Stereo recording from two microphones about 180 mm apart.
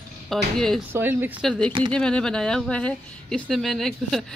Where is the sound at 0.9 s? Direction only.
10° right (ahead or behind).